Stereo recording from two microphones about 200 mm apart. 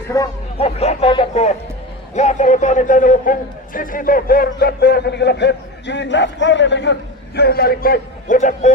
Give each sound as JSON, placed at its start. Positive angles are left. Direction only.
{"t": 0.1, "sound": "speech", "side_deg": 15}
{"t": 0.6, "sound": "a man's voice", "side_deg": 30}